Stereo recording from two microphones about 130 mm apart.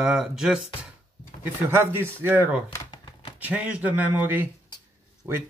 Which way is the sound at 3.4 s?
10° right (ahead or behind).